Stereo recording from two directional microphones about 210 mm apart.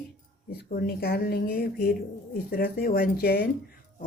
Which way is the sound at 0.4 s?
50° left (ahead or behind).